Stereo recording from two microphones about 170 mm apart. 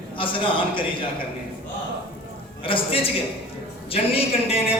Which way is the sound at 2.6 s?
30° left (ahead or behind).